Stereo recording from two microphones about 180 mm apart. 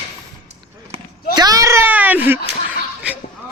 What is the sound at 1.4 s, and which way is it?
Baby cry, 20° right (ahead or behind).